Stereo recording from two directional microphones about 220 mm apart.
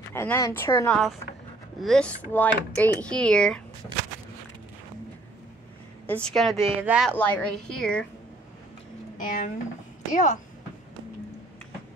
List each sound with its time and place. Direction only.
0.1 s speech: 10° left (ahead or behind)
6.0 s speech: 5° left (ahead or behind)
9.2 s speech: 35° left (ahead or behind)